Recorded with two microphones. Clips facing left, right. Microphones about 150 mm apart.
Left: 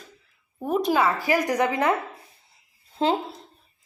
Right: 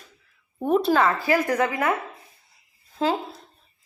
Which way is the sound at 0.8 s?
15° left (ahead or behind).